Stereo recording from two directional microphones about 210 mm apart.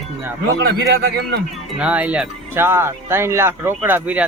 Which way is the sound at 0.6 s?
50° right (ahead or behind).